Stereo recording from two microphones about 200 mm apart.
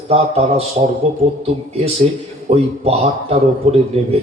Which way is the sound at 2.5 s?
30° right (ahead or behind).